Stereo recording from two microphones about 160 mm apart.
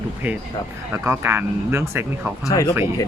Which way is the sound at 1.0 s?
15° right (ahead or behind).